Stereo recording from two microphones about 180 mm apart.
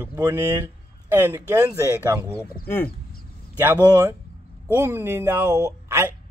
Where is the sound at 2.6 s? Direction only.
10° left (ahead or behind).